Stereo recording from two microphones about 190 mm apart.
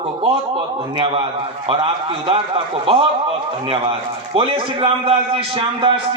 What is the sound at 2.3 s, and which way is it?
A man's voice, 30° right (ahead or behind).